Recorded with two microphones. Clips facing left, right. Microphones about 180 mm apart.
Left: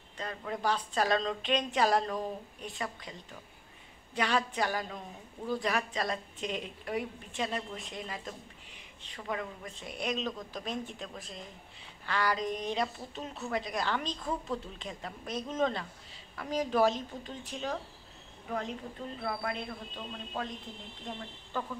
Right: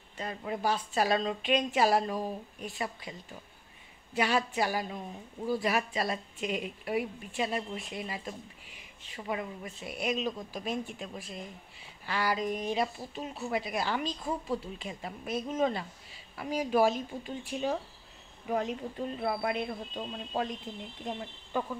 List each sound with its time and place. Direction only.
0.2 s speech: 15° right (ahead or behind)